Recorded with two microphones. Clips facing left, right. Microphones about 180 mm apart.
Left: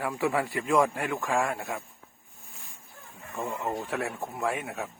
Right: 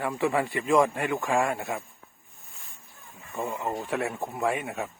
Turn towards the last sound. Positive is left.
turn(degrees=0)  # may be behind; listen again after turning